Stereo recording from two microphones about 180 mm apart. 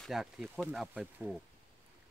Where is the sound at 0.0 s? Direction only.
Centre (ahead or behind).